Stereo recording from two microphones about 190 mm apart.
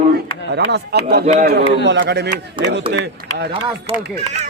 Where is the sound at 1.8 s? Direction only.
65° right (ahead or behind).